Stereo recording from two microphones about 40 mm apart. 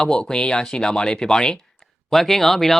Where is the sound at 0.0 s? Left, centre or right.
Left.